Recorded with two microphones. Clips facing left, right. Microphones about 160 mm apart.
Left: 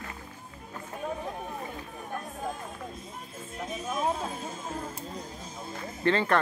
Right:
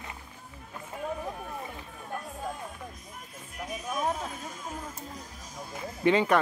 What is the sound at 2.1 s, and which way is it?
Music, 25° left (ahead or behind).